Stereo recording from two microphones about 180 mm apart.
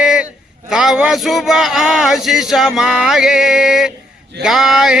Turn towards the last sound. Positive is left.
turn(degrees=0)  # may be behind; listen again after turning